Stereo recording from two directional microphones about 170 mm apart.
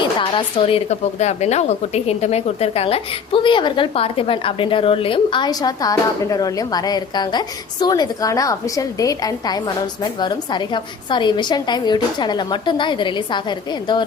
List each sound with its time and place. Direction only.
0.0 s speech: 30° left (ahead or behind)